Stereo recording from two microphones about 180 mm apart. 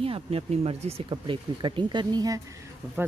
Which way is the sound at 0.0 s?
30° right (ahead or behind).